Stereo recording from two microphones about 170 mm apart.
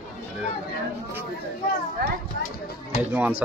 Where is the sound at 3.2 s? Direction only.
10° right (ahead or behind).